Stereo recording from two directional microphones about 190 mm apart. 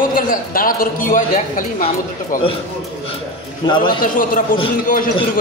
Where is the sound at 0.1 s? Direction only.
45° left (ahead or behind).